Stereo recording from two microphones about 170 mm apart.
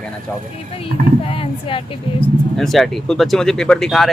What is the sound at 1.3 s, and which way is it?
Speech, 30° left (ahead or behind).